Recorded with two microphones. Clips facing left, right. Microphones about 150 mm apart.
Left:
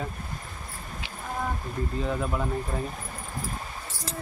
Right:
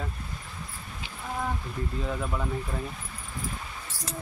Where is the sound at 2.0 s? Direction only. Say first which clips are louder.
Left 3 dB; centre (ahead or behind).